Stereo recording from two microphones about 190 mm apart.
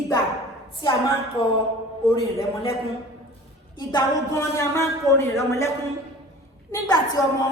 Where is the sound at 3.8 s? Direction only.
20° left (ahead or behind).